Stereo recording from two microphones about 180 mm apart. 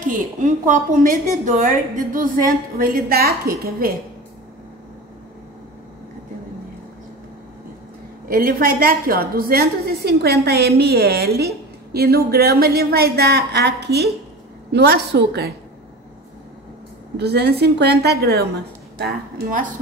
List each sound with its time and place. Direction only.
0.0 s a woman's voice: 45° right (ahead or behind)
8.3 s a woman's voice: 50° right (ahead or behind)
17.2 s a woman's voice: 65° right (ahead or behind)